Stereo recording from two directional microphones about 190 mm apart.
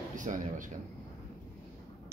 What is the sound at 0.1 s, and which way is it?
Speech, 40° right (ahead or behind).